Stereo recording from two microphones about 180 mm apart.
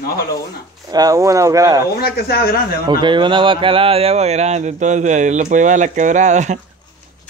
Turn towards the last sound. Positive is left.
turn(degrees=-40)  # may be behind; listen again after turning